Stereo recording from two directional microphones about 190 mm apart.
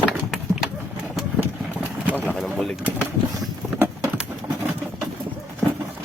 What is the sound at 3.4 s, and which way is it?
Boat, 5° right (ahead or behind).